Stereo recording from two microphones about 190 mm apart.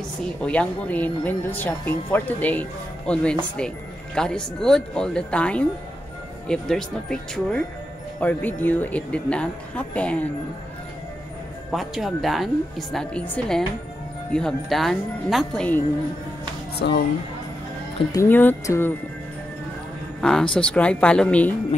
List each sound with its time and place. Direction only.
0.4 s speech: 5° left (ahead or behind)
11.7 s speech: centre (ahead or behind)
16.7 s speech: 60° left (ahead or behind)
18.1 s speech: 10° left (ahead or behind)
20.2 s speech: 5° left (ahead or behind)